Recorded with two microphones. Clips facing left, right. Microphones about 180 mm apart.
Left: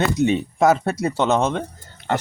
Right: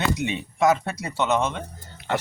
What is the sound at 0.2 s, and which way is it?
Speech, 40° left (ahead or behind).